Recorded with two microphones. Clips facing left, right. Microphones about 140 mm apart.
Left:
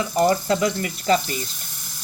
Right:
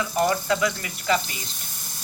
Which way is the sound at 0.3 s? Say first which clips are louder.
Left 3 dB; 35° left (ahead or behind).